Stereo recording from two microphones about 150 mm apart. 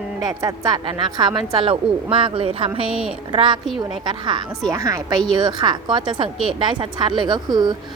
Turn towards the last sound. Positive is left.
turn(degrees=-30)  # may be behind; listen again after turning